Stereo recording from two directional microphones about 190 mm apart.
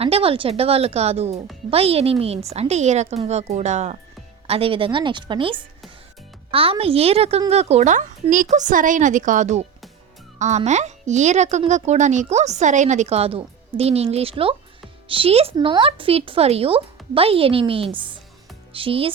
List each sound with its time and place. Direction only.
0.0 s speech: 30° right (ahead or behind)